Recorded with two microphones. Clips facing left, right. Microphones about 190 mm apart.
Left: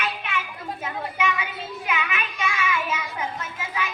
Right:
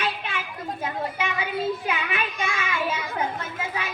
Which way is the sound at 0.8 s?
30° right (ahead or behind).